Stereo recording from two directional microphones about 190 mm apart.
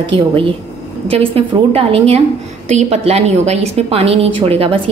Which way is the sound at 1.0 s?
30° right (ahead or behind).